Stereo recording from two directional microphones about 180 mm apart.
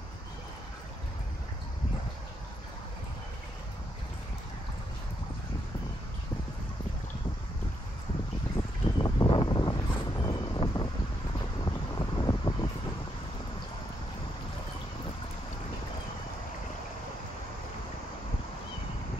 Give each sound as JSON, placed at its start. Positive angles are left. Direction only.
{"t": 8.5, "sound": "boat", "side_deg": 25}
{"t": 11.6, "sound": "vehicle", "side_deg": 25}